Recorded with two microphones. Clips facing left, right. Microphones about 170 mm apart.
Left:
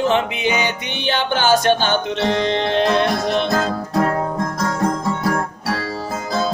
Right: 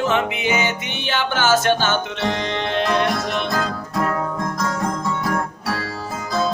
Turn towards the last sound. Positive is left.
turn(degrees=35)  # may be behind; listen again after turning